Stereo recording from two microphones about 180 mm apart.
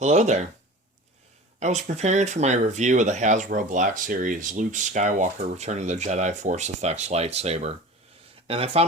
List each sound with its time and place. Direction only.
0.0 s speech: 40° right (ahead or behind)
1.5 s speech: 40° right (ahead or behind)